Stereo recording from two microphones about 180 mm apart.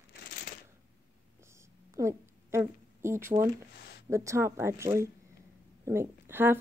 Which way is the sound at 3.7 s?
60° left (ahead or behind).